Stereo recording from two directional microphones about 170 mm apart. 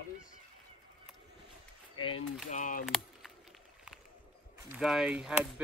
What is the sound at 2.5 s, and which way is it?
Speech, 50° left (ahead or behind).